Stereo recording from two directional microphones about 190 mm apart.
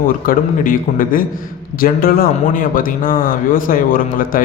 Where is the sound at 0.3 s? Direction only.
45° left (ahead or behind).